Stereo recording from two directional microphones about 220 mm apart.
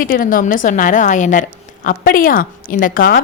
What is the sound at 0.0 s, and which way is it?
A woman's voice, 40° left (ahead or behind).